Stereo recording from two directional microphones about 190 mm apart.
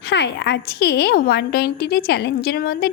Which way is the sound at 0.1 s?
65° left (ahead or behind).